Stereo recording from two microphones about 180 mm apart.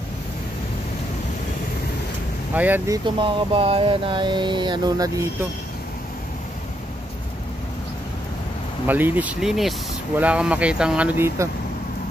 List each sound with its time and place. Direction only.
2.5 s speech: 10° right (ahead or behind)
3.2 s a sound: 30° right (ahead or behind)
8.8 s speech: 10° right (ahead or behind)